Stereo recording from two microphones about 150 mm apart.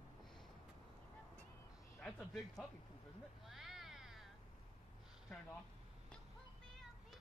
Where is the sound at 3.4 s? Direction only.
Centre (ahead or behind).